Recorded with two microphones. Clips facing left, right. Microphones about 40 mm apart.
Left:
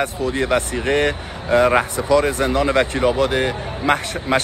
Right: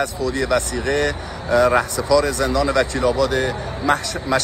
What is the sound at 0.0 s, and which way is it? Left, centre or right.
A man's voice, left.